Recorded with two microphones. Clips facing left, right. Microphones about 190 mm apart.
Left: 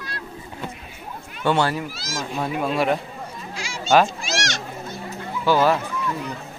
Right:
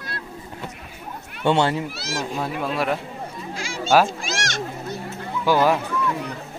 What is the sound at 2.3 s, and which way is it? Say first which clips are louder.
Speech: left 4 dB; centre (ahead or behind).